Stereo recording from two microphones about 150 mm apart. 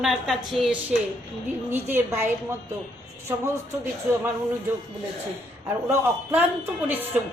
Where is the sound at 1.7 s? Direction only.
15° right (ahead or behind).